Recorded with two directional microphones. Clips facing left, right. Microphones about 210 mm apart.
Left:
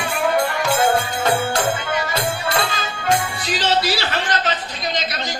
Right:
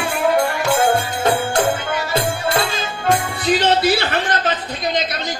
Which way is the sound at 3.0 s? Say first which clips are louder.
Right 3 dB; 55° right (ahead or behind).